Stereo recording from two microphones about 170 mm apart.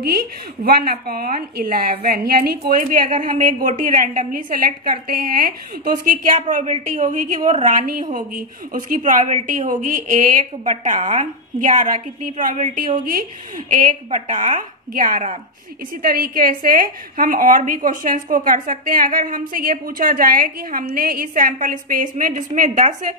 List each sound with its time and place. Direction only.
0.7 s a woman's voice: 60° right (ahead or behind)